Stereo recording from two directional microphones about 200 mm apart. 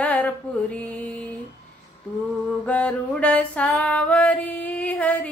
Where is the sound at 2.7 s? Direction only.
5° left (ahead or behind).